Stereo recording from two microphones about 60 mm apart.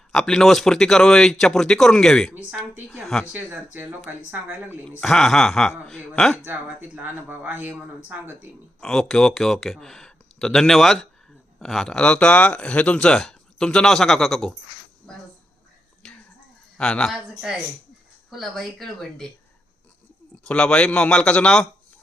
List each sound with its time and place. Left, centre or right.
0.3 s speech: centre
3.3 s speech: right
5.0 s speech: centre
6.4 s speech: right
8.8 s speech: centre; by 13.0 s left
13.0 s speech: centre
15.1 s a sound: centre
16.7 s speech: centre
18.3 s speech: centre
20.4 s speech: centre